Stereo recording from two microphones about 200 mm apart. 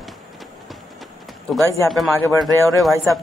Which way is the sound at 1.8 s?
Centre (ahead or behind).